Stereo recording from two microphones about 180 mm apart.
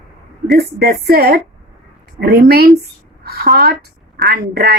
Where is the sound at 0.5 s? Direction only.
60° right (ahead or behind).